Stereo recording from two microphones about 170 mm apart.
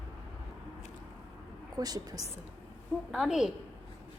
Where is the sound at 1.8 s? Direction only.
20° right (ahead or behind).